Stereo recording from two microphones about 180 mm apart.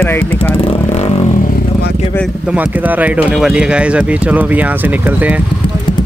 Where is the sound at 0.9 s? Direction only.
35° left (ahead or behind).